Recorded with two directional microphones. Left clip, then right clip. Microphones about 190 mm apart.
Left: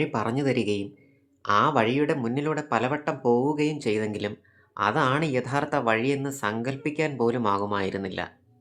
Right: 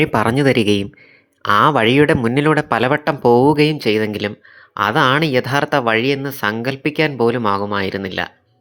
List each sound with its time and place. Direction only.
0.0 s speech: 45° right (ahead or behind); by 8.3 s 25° right (ahead or behind)